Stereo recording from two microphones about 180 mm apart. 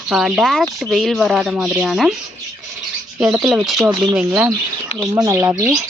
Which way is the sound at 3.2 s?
5° right (ahead or behind).